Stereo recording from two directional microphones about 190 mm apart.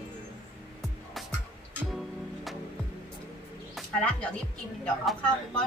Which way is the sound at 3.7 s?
5° left (ahead or behind).